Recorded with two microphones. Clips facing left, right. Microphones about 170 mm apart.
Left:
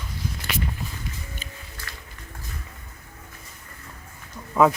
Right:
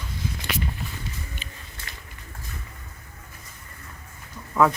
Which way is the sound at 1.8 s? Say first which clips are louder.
Left 1 dB; 25° right (ahead or behind).